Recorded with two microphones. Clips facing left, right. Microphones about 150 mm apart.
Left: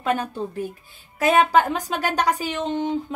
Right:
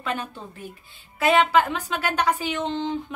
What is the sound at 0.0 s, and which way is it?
A woman's voice, 45° left (ahead or behind).